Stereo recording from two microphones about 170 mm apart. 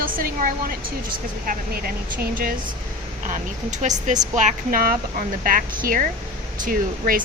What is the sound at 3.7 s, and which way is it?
A woman's voice, 45° right (ahead or behind).